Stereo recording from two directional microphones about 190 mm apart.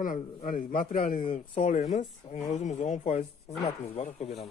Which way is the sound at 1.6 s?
40° left (ahead or behind).